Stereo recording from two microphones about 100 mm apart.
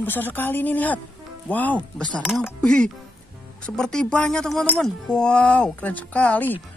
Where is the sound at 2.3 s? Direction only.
Centre (ahead or behind).